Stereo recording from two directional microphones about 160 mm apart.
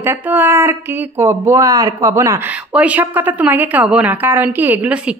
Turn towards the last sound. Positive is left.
turn(degrees=-10)  # may be behind; listen again after turning